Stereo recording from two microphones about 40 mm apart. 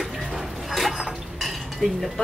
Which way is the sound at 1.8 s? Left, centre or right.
Left.